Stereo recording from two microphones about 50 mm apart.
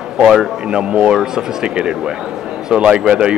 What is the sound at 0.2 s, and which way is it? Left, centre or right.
Speech, centre.